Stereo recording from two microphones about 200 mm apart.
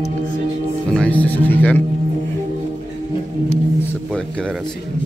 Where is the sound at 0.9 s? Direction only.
5° left (ahead or behind).